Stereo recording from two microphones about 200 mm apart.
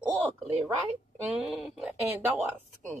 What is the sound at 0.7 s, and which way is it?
Speech, 5° right (ahead or behind).